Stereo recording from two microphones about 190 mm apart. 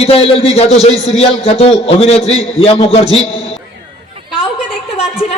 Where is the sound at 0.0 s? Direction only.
30° left (ahead or behind).